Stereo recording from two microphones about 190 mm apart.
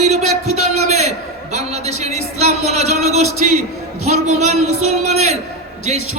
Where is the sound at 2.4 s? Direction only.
35° right (ahead or behind).